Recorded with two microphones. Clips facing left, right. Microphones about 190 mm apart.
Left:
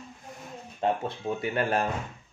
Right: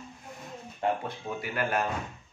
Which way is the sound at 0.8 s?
25° left (ahead or behind).